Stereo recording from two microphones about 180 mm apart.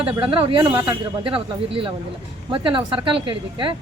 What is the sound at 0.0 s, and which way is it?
A woman's voice, 30° right (ahead or behind).